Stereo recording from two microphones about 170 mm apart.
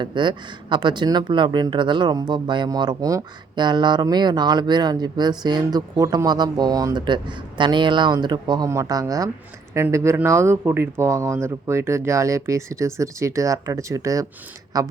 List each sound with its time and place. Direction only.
0.0 s speech: 25° right (ahead or behind)